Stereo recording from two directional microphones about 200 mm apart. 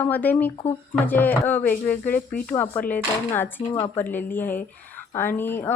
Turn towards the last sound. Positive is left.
turn(degrees=10)  # may be behind; listen again after turning